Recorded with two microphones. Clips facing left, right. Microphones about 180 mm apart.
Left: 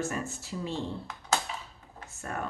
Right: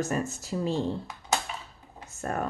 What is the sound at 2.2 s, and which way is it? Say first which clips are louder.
Speech: right 5 dB; 45° right (ahead or behind).